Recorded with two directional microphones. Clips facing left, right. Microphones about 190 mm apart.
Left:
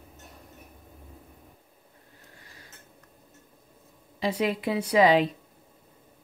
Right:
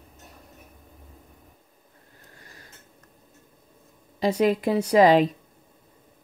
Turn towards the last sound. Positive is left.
turn(degrees=-45)  # may be behind; listen again after turning